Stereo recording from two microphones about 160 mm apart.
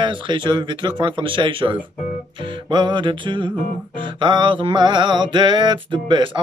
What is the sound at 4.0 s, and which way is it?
Mantra, 30° right (ahead or behind).